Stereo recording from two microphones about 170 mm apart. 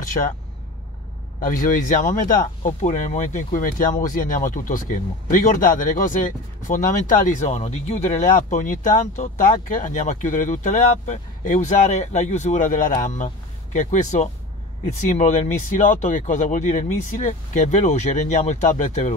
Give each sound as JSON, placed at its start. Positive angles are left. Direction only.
{"t": 1.4, "sound": "speech", "side_deg": 50}